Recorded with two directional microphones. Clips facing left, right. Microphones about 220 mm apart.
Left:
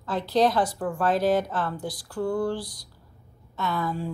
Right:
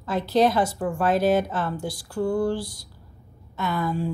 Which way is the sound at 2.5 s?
25° right (ahead or behind).